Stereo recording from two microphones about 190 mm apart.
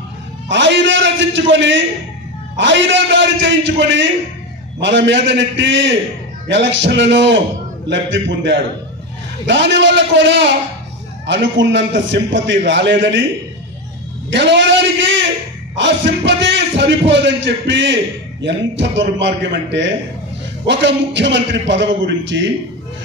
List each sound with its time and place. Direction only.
0.5 s a man's voice: 70° right (ahead or behind)
14.3 s a man's voice: 70° right (ahead or behind)